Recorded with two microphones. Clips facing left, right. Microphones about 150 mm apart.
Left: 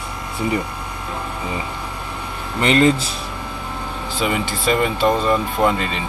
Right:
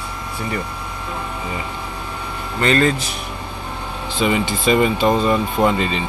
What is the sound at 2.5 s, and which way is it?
Speech, 20° left (ahead or behind).